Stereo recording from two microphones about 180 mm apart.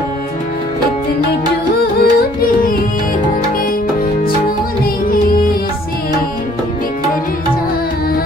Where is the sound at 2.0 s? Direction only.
55° left (ahead or behind).